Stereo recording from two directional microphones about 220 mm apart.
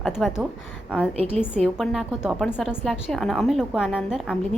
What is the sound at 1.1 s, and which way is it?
Speech, 30° right (ahead or behind).